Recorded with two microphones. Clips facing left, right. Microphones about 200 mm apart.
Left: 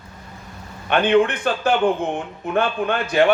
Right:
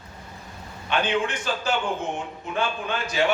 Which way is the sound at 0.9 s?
55° left (ahead or behind).